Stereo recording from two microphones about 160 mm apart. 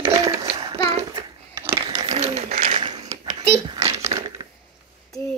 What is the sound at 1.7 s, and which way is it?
Crushing, 25° right (ahead or behind).